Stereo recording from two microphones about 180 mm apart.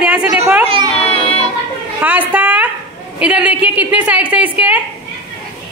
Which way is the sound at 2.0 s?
10° right (ahead or behind).